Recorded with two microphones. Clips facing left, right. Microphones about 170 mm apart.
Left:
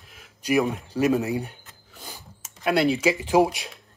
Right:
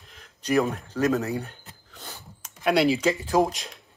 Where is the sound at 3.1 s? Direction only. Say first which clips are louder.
Left 3 dB; 15° left (ahead or behind).